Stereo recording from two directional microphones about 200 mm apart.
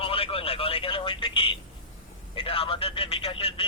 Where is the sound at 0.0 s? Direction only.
30° left (ahead or behind).